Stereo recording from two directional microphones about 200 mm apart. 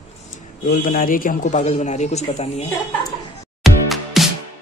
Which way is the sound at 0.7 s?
45° left (ahead or behind).